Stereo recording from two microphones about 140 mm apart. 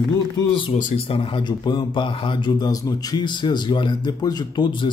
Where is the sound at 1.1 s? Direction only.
35° left (ahead or behind).